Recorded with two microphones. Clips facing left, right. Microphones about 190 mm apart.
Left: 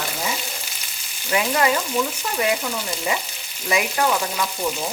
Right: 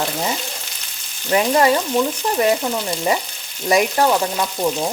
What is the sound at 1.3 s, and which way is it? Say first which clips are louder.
Frying: right 5 dB; 35° right (ahead or behind).